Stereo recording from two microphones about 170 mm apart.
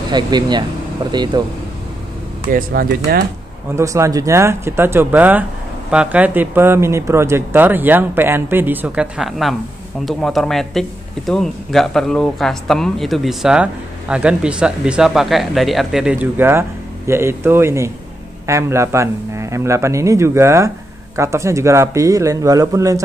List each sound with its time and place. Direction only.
0.1 s speech: 25° right (ahead or behind)
2.4 s speech: 60° right (ahead or behind)
3.7 s speech: 20° right (ahead or behind)